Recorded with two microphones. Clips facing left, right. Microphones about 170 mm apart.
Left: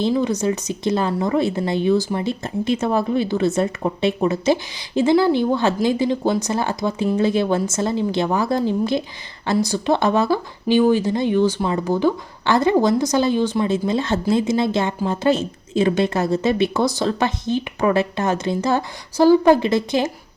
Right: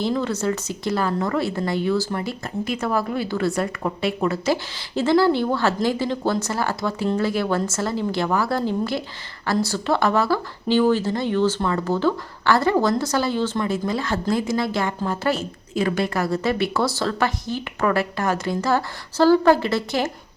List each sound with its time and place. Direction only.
0.1 s speech: 15° left (ahead or behind)